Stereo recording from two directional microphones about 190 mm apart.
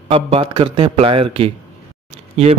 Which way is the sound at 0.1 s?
30° right (ahead or behind).